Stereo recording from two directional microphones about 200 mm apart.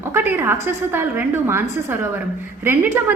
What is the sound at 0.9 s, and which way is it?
A woman's voice, 10° right (ahead or behind).